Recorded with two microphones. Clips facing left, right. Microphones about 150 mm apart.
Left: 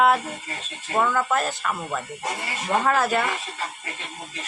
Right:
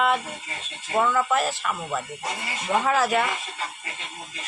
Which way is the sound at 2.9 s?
Centre (ahead or behind).